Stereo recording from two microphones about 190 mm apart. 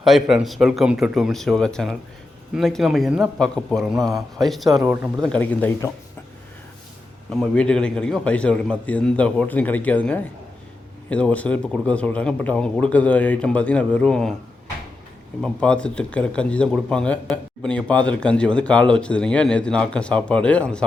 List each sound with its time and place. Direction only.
0.0 s speech: centre (ahead or behind)
4.7 s speech: 15° right (ahead or behind)
5.3 s speech: 5° left (ahead or behind)
7.3 s speech: 5° left (ahead or behind)
15.4 s speech: 5° left (ahead or behind)